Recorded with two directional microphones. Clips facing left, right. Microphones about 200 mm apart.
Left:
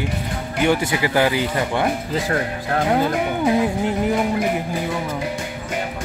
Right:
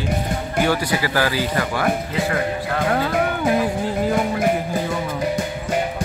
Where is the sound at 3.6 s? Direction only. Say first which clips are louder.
Left 1 dB; 20° left (ahead or behind).